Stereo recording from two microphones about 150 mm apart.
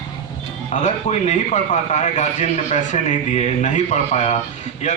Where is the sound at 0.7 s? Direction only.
50° left (ahead or behind).